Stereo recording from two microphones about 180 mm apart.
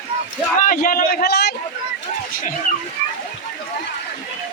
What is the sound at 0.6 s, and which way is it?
Speech, 50° left (ahead or behind).